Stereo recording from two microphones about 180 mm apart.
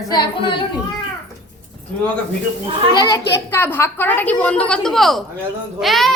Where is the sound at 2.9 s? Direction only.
20° left (ahead or behind).